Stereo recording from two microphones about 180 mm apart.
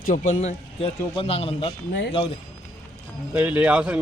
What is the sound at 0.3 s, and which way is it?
A man's voice, 35° left (ahead or behind).